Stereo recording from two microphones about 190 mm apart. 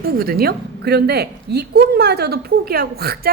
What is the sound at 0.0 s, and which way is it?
A woman's voice, 55° right (ahead or behind).